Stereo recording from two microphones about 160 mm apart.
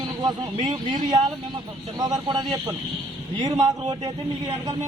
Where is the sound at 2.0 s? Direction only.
25° right (ahead or behind).